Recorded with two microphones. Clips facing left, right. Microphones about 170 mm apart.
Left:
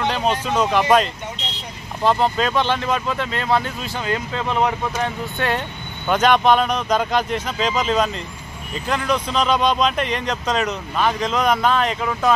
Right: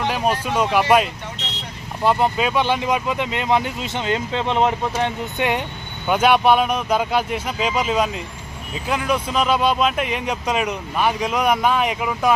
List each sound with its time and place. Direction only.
0.0 s speech: 10° right (ahead or behind)
6.0 s speech: 10° right (ahead or behind)